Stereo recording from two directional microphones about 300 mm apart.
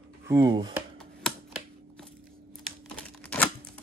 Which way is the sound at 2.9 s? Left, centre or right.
Centre.